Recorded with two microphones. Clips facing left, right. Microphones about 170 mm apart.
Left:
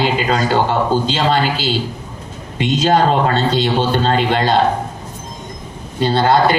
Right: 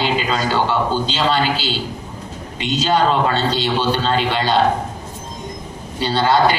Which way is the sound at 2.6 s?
50° left (ahead or behind).